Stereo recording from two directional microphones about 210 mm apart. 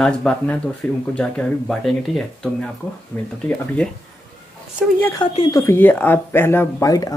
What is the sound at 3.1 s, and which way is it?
Speech, 5° left (ahead or behind).